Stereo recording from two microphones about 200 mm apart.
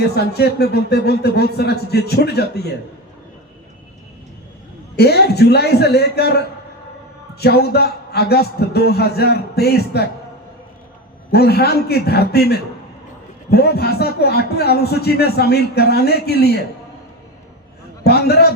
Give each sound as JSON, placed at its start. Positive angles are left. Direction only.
{"t": 0.0, "sound": "a man's voice", "side_deg": 55}
{"t": 4.9, "sound": "a man's voice", "side_deg": 55}
{"t": 11.3, "sound": "a man's voice", "side_deg": 55}
{"t": 18.0, "sound": "a man's voice", "side_deg": 55}